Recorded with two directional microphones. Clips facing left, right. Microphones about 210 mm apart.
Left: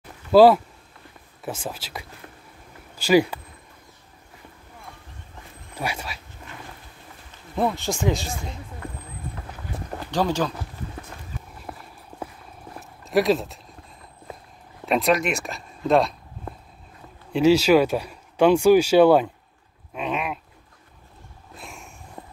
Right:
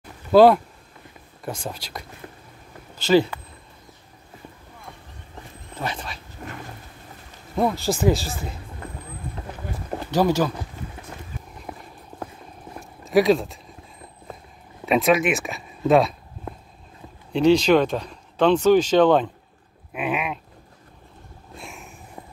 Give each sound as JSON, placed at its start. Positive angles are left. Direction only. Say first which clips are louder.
{"t": 0.3, "sound": "speech", "louder": "even", "side_deg": 5}
{"t": 5.8, "sound": "speech", "louder": "even", "side_deg": 10}
{"t": 7.5, "sound": "speech", "louder": "right 2 dB", "side_deg": 0}
{"t": 10.1, "sound": "speech", "louder": "right 3 dB", "side_deg": -10}
{"t": 11.7, "sound": "clip-clop", "louder": "right 1 dB", "side_deg": -5}
{"t": 13.0, "sound": "speech", "louder": "right 3 dB", "side_deg": 0}
{"t": 14.9, "sound": "speech", "louder": "right 2 dB", "side_deg": 0}
{"t": 19.9, "sound": "dog", "louder": "right 1 dB", "side_deg": -5}
{"t": 21.5, "sound": "a sound", "louder": "right 2 dB", "side_deg": 0}